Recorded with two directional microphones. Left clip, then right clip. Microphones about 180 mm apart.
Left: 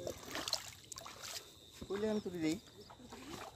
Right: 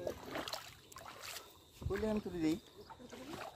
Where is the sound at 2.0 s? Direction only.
30° left (ahead or behind).